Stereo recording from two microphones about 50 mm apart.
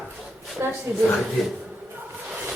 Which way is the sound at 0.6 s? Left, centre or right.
Right.